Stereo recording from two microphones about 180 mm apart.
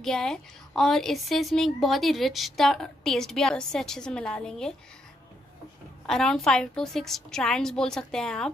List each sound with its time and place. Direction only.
0.0 s a woman's voice: 5° left (ahead or behind)
6.0 s a woman's voice: centre (ahead or behind)